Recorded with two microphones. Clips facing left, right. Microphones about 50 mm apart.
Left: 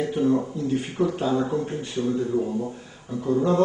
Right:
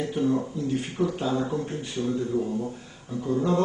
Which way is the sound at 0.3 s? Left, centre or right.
Centre.